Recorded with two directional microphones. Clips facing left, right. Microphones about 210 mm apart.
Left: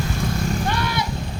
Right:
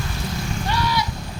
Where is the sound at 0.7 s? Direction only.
55° left (ahead or behind).